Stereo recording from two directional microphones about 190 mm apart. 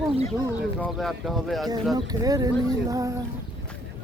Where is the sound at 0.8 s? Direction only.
Centre (ahead or behind).